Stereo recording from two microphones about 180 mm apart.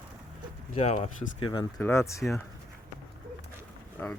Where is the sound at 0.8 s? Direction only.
35° left (ahead or behind).